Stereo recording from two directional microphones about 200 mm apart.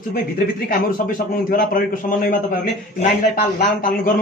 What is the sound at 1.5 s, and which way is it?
A man's voice, 45° left (ahead or behind).